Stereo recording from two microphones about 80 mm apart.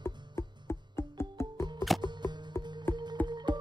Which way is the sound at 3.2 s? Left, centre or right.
Right.